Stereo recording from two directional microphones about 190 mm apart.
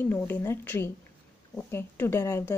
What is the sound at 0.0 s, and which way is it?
A woman's voice, 10° left (ahead or behind).